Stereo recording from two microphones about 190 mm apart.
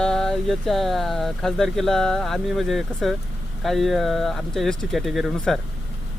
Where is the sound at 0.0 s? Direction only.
5° left (ahead or behind).